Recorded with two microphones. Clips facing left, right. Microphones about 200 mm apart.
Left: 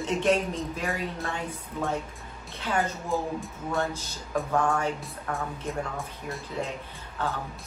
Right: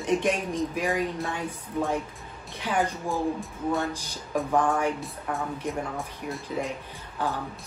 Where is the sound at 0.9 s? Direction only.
Centre (ahead or behind).